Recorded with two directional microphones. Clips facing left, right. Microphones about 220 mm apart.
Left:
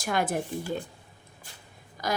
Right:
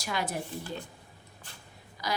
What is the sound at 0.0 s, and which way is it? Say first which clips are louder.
Speech: left 6 dB; 50° left (ahead or behind).